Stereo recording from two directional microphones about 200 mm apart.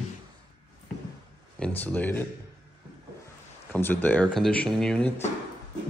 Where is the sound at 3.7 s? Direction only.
10° left (ahead or behind).